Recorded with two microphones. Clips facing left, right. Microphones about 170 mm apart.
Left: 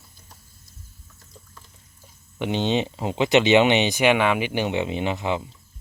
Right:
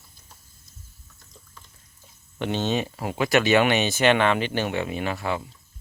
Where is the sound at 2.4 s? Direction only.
15° left (ahead or behind).